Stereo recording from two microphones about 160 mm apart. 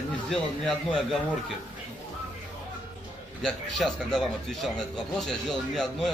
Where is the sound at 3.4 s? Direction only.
Centre (ahead or behind).